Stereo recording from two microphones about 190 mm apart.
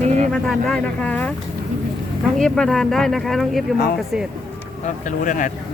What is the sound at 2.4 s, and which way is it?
Speech, 5° left (ahead or behind).